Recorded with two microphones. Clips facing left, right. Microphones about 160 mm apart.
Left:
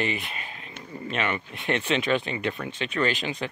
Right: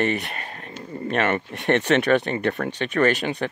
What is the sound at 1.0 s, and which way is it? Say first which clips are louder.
Speech: right 6 dB; 55° right (ahead or behind).